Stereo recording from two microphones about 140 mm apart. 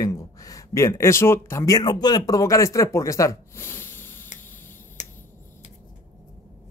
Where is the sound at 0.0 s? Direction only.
25° left (ahead or behind).